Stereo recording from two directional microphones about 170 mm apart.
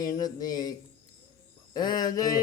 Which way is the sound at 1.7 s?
25° left (ahead or behind).